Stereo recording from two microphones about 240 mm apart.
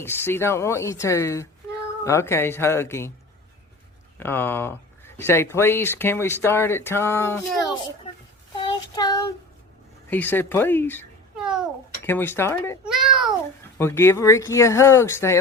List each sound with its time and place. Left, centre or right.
0.0 s speech: centre
4.2 s speech: centre
8.5 s child singing: centre
10.1 s speech: centre
11.3 s a sound: centre
12.0 s speech: centre
12.9 s a sound: centre
13.7 s speech: centre